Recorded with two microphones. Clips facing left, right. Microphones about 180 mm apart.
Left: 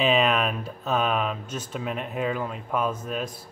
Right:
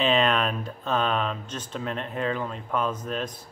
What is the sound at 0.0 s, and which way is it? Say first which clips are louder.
Speech: left 1 dB; 5° left (ahead or behind).